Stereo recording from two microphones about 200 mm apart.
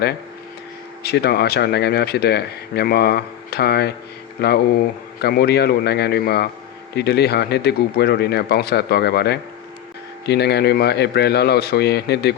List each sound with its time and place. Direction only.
1.0 s speech: 55° left (ahead or behind)